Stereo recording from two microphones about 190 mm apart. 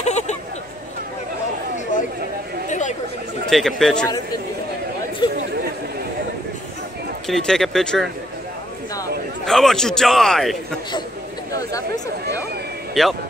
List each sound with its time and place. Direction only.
0.0 s a sound: 35° left (ahead or behind)
2.7 s chatter: 40° left (ahead or behind)
3.4 s a man's voice: centre (ahead or behind)
5.2 s chatter: 25° left (ahead or behind)
7.2 s a man's voice: 5° left (ahead or behind)
9.5 s a man's voice: centre (ahead or behind)
11.5 s speech: 15° left (ahead or behind)
13.0 s a man's voice: centre (ahead or behind)